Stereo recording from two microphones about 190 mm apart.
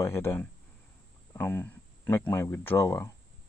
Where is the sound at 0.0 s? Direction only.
15° left (ahead or behind).